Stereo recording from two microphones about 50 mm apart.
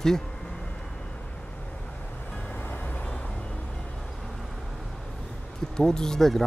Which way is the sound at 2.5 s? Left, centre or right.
Left.